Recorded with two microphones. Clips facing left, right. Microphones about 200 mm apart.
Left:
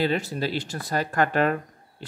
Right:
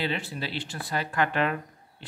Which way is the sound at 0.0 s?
45° left (ahead or behind).